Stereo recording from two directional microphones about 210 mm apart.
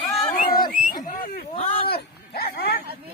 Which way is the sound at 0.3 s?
45° left (ahead or behind).